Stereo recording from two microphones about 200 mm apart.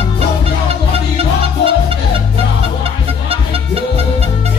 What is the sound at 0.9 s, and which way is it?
Music, 30° right (ahead or behind).